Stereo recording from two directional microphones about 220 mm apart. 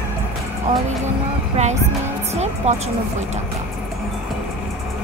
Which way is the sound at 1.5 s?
30° right (ahead or behind).